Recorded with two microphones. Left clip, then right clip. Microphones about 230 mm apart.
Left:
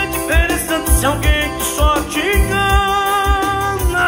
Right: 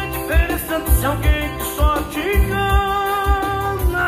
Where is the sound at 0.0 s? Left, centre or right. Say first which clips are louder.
Left 5 dB; left.